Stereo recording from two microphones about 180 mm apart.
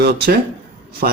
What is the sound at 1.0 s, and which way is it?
Speech, 50° right (ahead or behind).